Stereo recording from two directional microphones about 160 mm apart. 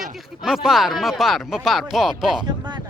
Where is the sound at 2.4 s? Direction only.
30° right (ahead or behind).